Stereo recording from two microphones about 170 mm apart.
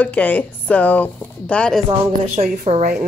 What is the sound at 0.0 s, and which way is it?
Speech, 10° left (ahead or behind).